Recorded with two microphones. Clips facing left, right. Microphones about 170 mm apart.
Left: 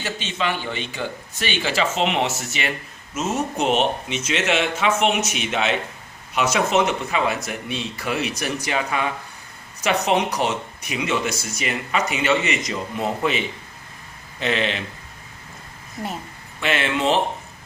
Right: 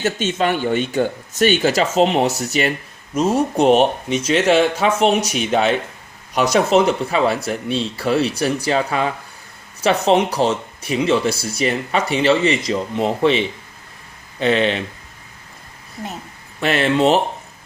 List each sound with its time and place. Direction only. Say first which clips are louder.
0.0 s speech: right 7 dB; 45° right (ahead or behind)
16.6 s speech: right 6 dB; 40° right (ahead or behind)